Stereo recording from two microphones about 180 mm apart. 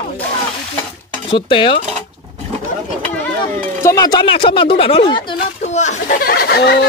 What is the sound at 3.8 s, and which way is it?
Speech, 20° left (ahead or behind).